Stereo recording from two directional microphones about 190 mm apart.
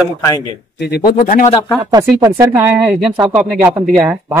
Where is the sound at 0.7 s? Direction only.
60° left (ahead or behind); by 1.5 s 40° left (ahead or behind).